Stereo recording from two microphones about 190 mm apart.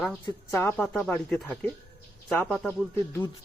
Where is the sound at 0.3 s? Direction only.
15° left (ahead or behind).